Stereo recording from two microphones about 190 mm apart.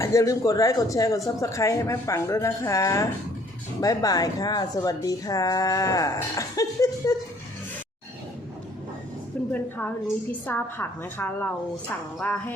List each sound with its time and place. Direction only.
0.0 s a woman's voice: 15° left (ahead or behind)
9.5 s a woman's voice: 10° left (ahead or behind)